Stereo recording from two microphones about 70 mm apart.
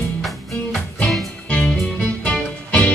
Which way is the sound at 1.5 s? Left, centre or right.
Centre.